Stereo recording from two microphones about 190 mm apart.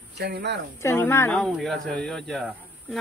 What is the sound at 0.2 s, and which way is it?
Speech, 60° right (ahead or behind).